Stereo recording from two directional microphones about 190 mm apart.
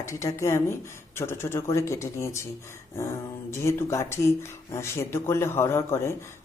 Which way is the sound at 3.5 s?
15° left (ahead or behind).